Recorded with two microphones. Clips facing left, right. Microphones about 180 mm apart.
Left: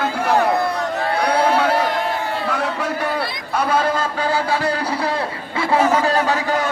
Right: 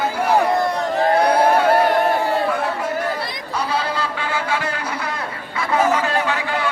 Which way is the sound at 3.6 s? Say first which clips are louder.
Left 4 dB; 50° left (ahead or behind).